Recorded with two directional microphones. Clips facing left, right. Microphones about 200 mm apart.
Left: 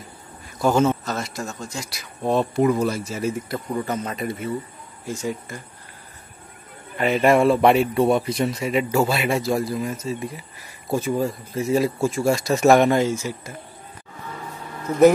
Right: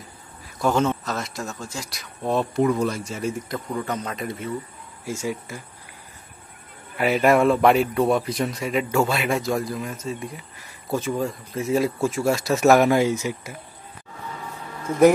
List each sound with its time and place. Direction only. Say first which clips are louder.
0.6 s a man's voice: left 3 dB; 5° left (ahead or behind)
5.0 s speech: even; 10° right (ahead or behind)
7.0 s a man's voice: left 1 dB; 5° right (ahead or behind)
13.0 s speech: right 1 dB; 15° right (ahead or behind)